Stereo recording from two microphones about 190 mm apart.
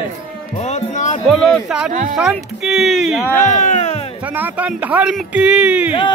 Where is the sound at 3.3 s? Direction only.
40° left (ahead or behind).